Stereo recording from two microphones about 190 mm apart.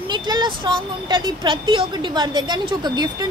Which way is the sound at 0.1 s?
25° right (ahead or behind).